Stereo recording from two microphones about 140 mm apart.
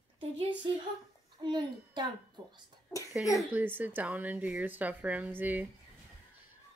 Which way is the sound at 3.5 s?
15° right (ahead or behind).